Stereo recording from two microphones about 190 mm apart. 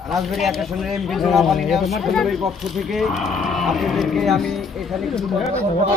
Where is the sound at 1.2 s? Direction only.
Centre (ahead or behind).